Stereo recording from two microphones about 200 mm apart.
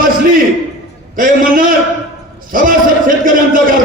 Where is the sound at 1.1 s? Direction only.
45° right (ahead or behind).